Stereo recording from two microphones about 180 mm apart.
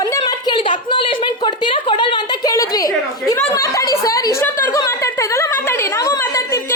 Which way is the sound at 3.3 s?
15° left (ahead or behind).